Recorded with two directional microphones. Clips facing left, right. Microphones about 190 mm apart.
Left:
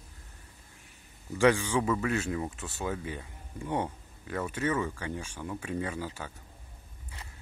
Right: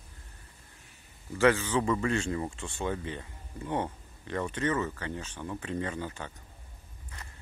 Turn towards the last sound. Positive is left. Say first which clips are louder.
# even
turn(degrees=10)  # may be behind; listen again after turning